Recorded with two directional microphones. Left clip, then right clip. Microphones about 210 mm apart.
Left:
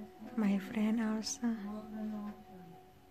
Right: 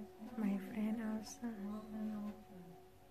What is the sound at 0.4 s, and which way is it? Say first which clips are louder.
Speech: left 7 dB; 45° left (ahead or behind).